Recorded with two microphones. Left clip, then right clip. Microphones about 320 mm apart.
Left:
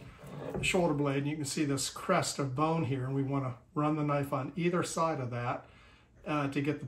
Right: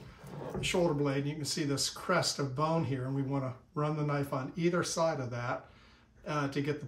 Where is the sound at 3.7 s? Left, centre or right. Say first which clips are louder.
Left 3 dB; centre.